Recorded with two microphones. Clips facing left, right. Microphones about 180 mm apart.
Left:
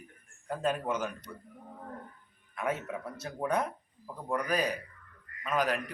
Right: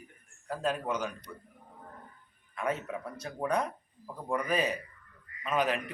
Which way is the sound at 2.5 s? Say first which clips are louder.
Even; 5° left (ahead or behind).